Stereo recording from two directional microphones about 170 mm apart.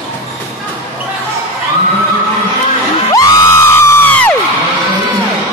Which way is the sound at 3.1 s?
20° left (ahead or behind).